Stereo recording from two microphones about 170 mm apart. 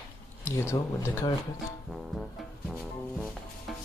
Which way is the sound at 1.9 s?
Centre (ahead or behind).